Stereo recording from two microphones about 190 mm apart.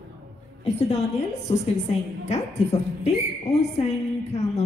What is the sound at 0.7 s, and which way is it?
A woman's voice, 35° left (ahead or behind).